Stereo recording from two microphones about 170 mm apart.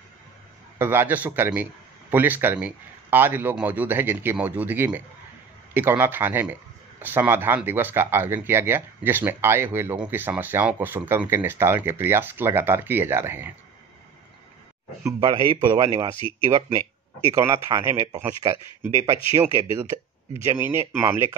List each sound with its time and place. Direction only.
0.7 s speech: 15° right (ahead or behind)
15.0 s a man's voice: 25° right (ahead or behind)
16.2 s speech: 30° left (ahead or behind)
16.5 s speech: 15° right (ahead or behind)
18.4 s a man's voice: 25° right (ahead or behind)
18.8 s speech: 15° right (ahead or behind)
20.4 s speech: 15° right (ahead or behind)